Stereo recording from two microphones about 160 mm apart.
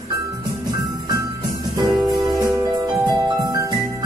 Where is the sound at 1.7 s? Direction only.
20° right (ahead or behind).